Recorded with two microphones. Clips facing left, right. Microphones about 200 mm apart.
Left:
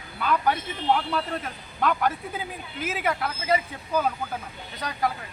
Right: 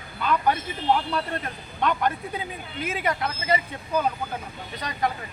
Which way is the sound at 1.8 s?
5° left (ahead or behind).